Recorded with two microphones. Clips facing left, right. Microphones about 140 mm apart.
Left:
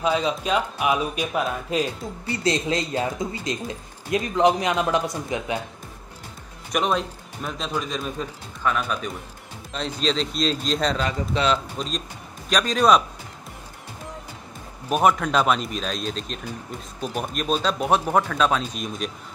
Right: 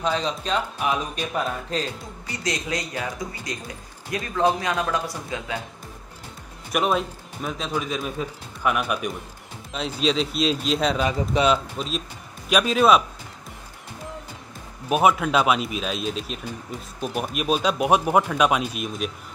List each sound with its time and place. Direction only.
0.0 s speech: 10° left (ahead or behind)
2.2 s speech: 30° left (ahead or behind)
6.7 s speech: 5° right (ahead or behind)
14.9 s speech: 5° right (ahead or behind)